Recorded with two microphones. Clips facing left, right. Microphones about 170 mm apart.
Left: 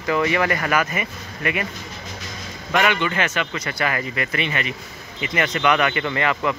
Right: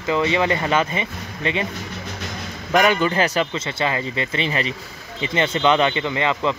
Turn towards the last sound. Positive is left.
turn(degrees=-20)  # may be behind; listen again after turning